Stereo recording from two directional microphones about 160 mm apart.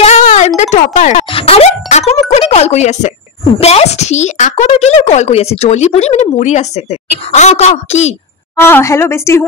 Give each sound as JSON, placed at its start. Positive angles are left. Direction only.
{"t": 0.0, "sound": "a sound", "side_deg": 45}
{"t": 1.3, "sound": "a woman's voice", "side_deg": 40}
{"t": 8.5, "sound": "a woman's voice", "side_deg": 15}